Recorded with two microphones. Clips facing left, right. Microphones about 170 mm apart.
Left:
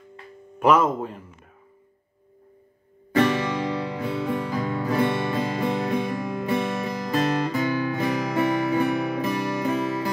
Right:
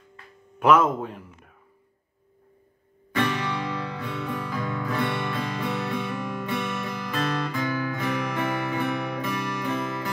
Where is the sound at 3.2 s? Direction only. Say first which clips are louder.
Left 5 dB; 40° left (ahead or behind).